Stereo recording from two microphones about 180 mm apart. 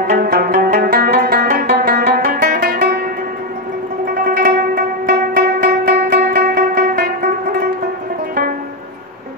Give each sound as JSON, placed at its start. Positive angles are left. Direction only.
{"t": 0.0, "sound": "music", "side_deg": -55}
{"t": 4.1, "sound": "zither", "side_deg": -50}